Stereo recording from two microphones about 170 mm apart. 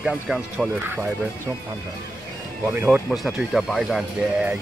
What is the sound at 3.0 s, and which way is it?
Speech, centre (ahead or behind).